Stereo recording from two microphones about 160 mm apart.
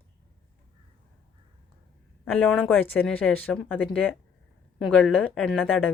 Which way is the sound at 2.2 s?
5° left (ahead or behind).